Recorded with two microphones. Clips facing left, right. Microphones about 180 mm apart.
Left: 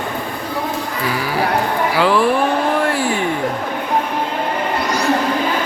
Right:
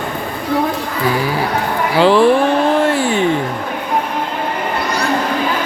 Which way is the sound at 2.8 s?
25° right (ahead or behind).